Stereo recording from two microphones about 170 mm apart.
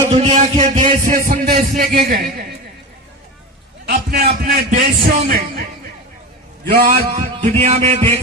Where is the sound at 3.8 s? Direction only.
60° right (ahead or behind).